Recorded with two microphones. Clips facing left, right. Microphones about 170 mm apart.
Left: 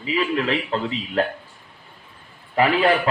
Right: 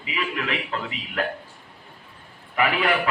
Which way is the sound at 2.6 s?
30° left (ahead or behind).